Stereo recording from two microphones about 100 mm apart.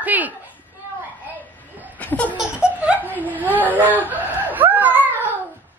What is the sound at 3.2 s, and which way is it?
Whimper, 15° right (ahead or behind).